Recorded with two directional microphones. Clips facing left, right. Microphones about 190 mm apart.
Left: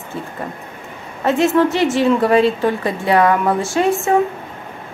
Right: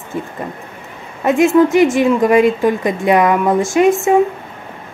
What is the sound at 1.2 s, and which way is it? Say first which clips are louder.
A woman's voice: right 3 dB; 15° right (ahead or behind).